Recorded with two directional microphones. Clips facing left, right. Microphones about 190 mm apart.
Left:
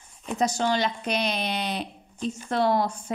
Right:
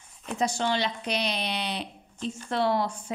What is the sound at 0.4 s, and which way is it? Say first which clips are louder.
A woman's voice: left 3 dB; 40° left (ahead or behind).